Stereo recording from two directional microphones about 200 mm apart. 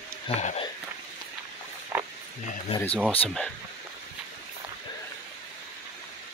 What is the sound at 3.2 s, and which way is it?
Speech, 5° left (ahead or behind).